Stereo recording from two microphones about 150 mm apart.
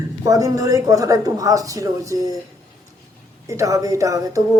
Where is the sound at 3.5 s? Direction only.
20° right (ahead or behind).